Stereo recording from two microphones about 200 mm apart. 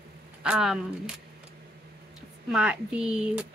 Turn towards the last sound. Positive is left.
turn(degrees=-5)  # may be behind; listen again after turning